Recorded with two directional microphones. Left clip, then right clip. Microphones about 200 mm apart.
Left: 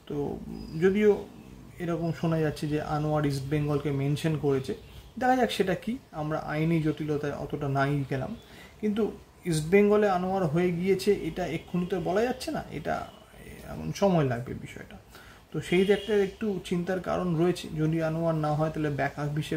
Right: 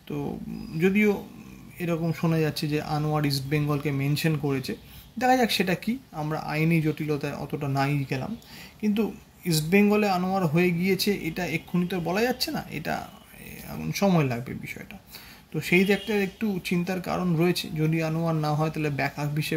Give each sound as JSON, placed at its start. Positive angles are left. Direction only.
{"t": 0.7, "sound": "speech", "side_deg": 15}
{"t": 9.5, "sound": "speech", "side_deg": 15}